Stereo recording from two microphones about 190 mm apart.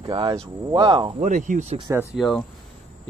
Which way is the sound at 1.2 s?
40° right (ahead or behind).